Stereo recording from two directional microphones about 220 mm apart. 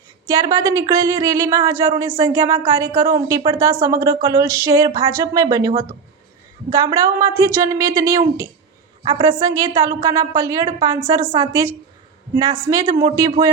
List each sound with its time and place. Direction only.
0.3 s speech: 15° right (ahead or behind)